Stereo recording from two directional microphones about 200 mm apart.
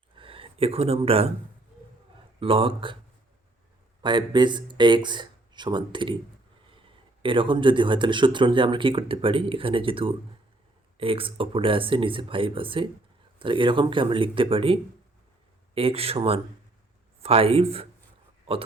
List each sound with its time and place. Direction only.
0.2 s speech: 25° right (ahead or behind)
2.4 s a man's voice: 25° right (ahead or behind)
4.0 s a man's voice: 20° right (ahead or behind)